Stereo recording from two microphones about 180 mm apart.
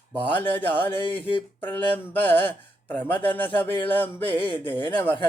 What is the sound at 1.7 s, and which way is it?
Speech, 10° left (ahead or behind).